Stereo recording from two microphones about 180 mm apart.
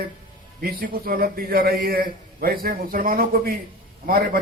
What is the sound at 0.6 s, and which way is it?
A man's voice, 55° right (ahead or behind).